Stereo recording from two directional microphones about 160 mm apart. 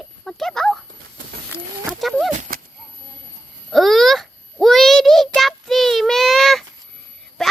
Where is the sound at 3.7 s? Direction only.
Centre (ahead or behind).